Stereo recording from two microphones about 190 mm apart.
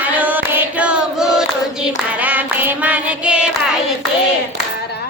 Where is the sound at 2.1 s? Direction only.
10° right (ahead or behind).